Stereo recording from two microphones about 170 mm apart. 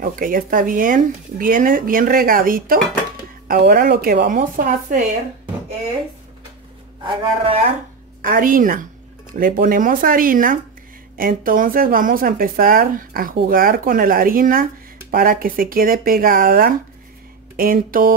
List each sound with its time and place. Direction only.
0.0 s speech: 55° right (ahead or behind)
7.0 s a man's voice: 30° right (ahead or behind)
8.2 s a woman's voice: 55° right (ahead or behind)